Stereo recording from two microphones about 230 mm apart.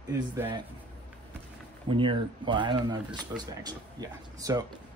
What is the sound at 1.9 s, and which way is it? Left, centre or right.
A man's voice, right.